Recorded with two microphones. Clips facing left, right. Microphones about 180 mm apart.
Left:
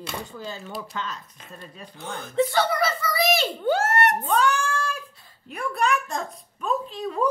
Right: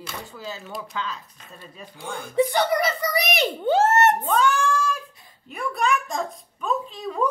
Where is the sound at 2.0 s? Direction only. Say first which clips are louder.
Right 2 dB; 10° right (ahead or behind).